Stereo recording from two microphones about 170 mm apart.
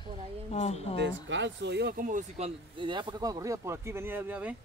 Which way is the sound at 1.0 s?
90° right.